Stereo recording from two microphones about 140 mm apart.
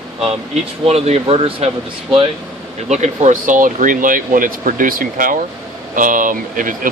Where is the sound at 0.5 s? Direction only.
50° right (ahead or behind).